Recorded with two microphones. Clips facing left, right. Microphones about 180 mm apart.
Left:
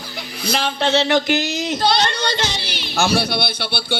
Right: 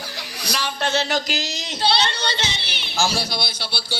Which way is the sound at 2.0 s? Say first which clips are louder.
Left 4 dB; 55° left (ahead or behind).